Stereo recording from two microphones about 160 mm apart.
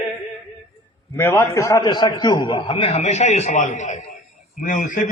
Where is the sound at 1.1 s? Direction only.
15° left (ahead or behind).